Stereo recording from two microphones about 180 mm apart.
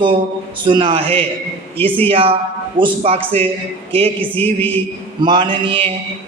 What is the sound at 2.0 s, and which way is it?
A man's voice, 30° right (ahead or behind).